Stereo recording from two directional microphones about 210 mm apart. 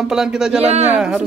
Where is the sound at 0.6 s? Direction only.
30° right (ahead or behind).